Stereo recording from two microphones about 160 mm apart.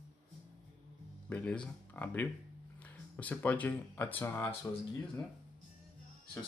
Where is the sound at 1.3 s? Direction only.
10° left (ahead or behind).